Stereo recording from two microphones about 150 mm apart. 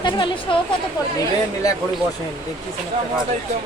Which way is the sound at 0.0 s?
30° left (ahead or behind).